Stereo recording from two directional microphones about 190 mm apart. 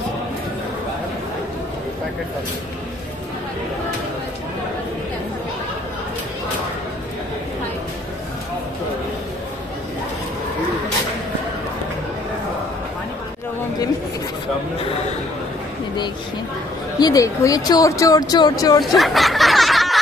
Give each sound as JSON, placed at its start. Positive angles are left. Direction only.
{"t": 17.0, "sound": "speech", "side_deg": 15}
{"t": 18.9, "sound": "snicker", "side_deg": 0}